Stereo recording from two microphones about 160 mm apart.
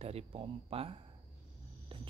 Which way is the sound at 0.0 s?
40° right (ahead or behind).